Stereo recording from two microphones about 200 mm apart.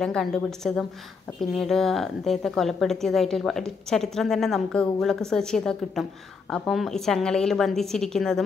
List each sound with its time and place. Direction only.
0.0 s a woman's voice: centre (ahead or behind)